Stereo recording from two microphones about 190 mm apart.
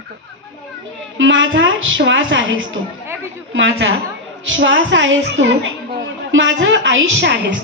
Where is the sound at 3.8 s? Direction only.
80° right.